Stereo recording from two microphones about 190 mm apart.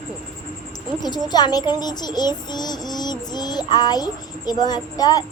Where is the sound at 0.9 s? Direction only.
20° left (ahead or behind).